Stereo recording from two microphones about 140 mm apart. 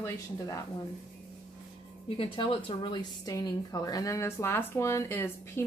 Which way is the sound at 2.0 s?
40° left (ahead or behind).